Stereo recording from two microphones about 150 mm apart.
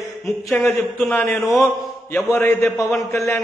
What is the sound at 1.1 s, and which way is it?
A man's voice, 15° left (ahead or behind).